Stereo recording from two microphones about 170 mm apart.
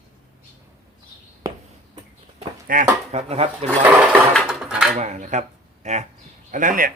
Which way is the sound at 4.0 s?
5° right (ahead or behind).